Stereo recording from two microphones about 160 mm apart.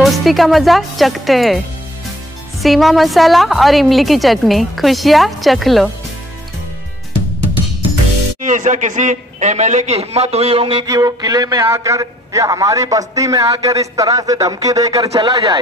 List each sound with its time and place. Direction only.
0.0 s speech: centre (ahead or behind)
2.6 s a woman's voice: centre (ahead or behind)
8.4 s a man's voice: 50° right (ahead or behind); by 10.9 s 35° right (ahead or behind)
10.9 s a man's voice: 20° right (ahead or behind)